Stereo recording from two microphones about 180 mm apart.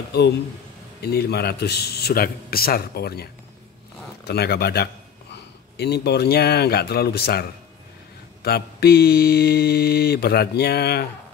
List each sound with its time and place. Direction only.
1.0 s mantra: 65° left (ahead or behind)
5.3 s speech: 65° left (ahead or behind)
8.4 s mantra: 60° left (ahead or behind)